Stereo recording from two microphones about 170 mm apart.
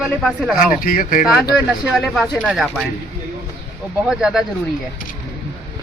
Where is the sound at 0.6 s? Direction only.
55° left (ahead or behind).